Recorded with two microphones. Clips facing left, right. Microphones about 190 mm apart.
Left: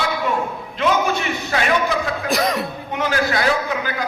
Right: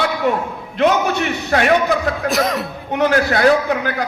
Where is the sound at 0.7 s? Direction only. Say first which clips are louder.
Right 4 dB; 60° right (ahead or behind).